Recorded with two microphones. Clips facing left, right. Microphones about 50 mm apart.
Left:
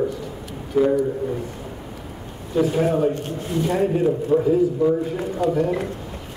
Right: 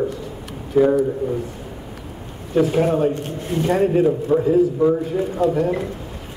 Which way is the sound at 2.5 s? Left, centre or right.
Right.